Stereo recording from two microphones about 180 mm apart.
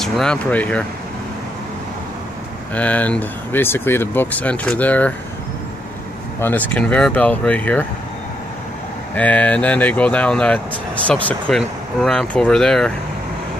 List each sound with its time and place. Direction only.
0.0 s speech: 5° left (ahead or behind)
2.7 s speech: 10° left (ahead or behind)
6.4 s speech: 10° left (ahead or behind)
9.1 s speech: 10° left (ahead or behind)